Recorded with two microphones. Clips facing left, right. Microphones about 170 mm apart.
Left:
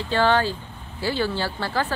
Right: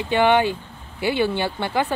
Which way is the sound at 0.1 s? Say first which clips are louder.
Right 3 dB; 20° right (ahead or behind).